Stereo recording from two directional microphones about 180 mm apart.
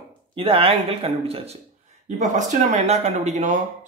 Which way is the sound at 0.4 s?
30° right (ahead or behind).